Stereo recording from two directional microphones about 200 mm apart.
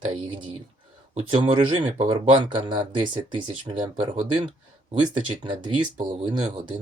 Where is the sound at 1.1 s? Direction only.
25° right (ahead or behind).